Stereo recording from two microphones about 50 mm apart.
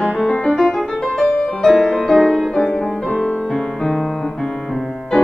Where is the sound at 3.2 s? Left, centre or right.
Centre.